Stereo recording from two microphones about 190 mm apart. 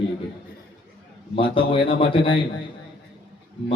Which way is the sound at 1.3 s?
25° left (ahead or behind).